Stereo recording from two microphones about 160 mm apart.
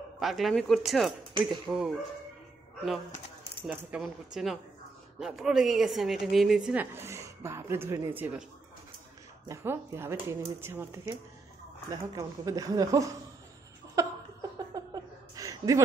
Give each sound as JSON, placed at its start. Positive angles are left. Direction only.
{"t": 0.2, "sound": "speech", "side_deg": 0}
{"t": 3.6, "sound": "speech", "side_deg": -5}
{"t": 9.5, "sound": "speech", "side_deg": -15}
{"t": 14.0, "sound": "a sound", "side_deg": -20}